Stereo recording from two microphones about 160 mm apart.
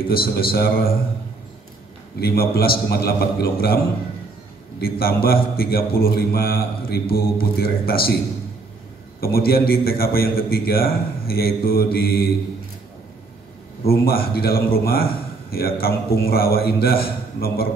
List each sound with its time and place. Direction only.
0.0 s a man's voice: 70° left (ahead or behind)
2.1 s a man's voice: 75° left (ahead or behind)
9.2 s a man's voice: 70° left (ahead or behind)
13.8 s a man's voice: 70° left (ahead or behind)